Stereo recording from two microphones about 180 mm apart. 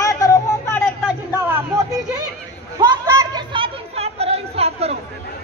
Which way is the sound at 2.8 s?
20° right (ahead or behind).